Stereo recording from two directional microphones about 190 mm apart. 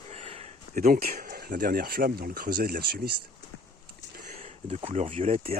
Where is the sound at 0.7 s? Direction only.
50° right (ahead or behind).